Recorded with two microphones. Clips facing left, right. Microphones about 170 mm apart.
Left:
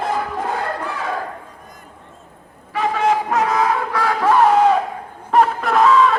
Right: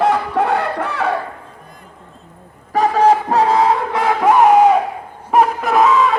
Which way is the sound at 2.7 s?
40° right (ahead or behind).